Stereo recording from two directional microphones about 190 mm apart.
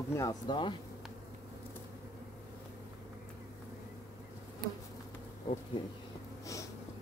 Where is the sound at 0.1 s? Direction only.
20° left (ahead or behind).